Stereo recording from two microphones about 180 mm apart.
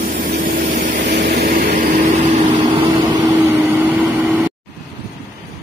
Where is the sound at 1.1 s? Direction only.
65° right (ahead or behind).